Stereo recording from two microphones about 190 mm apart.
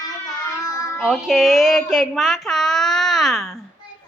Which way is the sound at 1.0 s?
Centre (ahead or behind).